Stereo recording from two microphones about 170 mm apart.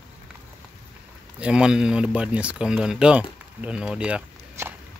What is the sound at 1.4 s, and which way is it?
Speech, 5° right (ahead or behind).